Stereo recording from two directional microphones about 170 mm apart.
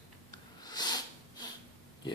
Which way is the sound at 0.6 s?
25° left (ahead or behind).